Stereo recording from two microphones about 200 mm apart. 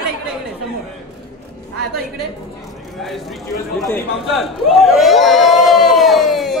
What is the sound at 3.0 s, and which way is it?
Speech, centre (ahead or behind).